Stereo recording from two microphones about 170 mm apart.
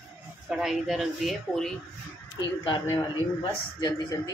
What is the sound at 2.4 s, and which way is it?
Speech, 25° left (ahead or behind).